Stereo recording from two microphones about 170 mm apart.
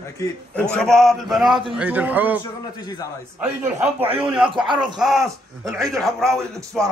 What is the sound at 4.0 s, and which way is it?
Speech, 30° right (ahead or behind).